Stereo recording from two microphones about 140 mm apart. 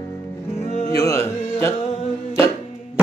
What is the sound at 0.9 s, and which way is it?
Speech, 25° left (ahead or behind).